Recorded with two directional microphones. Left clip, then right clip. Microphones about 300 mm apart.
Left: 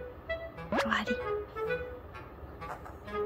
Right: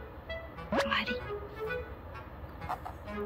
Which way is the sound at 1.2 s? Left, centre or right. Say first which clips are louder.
Left 4 dB; centre.